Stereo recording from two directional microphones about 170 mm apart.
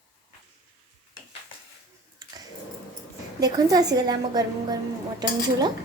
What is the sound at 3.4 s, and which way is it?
A woman's voice, 20° right (ahead or behind).